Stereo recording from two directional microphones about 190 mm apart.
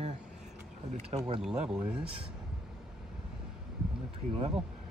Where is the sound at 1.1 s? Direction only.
25° right (ahead or behind).